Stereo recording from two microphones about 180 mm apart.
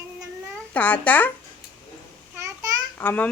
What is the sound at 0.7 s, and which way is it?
Speech, 10° left (ahead or behind).